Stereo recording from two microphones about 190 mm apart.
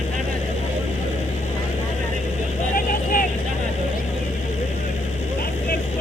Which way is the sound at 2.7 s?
45° left (ahead or behind).